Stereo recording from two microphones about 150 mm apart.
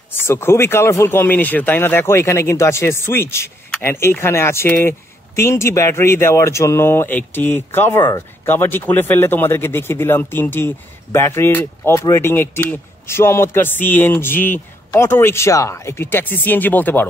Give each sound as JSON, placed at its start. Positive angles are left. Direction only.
{"t": 0.1, "sound": "speech", "side_deg": 15}